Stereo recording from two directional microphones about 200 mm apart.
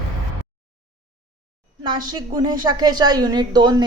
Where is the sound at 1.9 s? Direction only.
20° right (ahead or behind).